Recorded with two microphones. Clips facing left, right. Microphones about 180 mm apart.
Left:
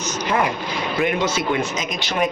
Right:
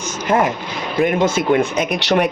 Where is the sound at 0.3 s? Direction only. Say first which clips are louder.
Right 5 dB; 45° right (ahead or behind).